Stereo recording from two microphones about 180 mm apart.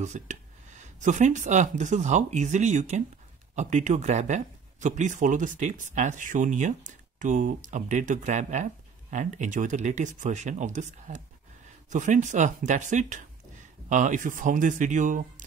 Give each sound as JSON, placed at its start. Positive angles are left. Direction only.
{"t": 0.0, "sound": "speech", "side_deg": -40}